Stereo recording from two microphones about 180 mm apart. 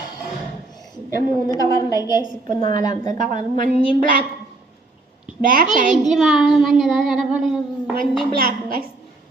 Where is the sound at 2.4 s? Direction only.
45° right (ahead or behind).